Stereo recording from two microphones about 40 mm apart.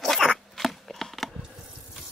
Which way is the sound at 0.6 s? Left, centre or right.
Centre.